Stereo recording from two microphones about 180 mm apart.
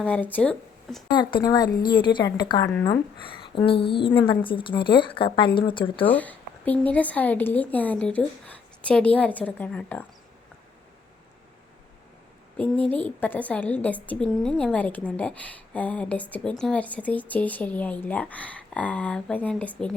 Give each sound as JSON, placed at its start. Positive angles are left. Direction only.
{"t": 0.0, "sound": "speech", "side_deg": 10}
{"t": 1.1, "sound": "a woman's voice", "side_deg": 25}
{"t": 6.1, "sound": "a woman's voice", "side_deg": 10}
{"t": 12.5, "sound": "a woman's voice", "side_deg": 10}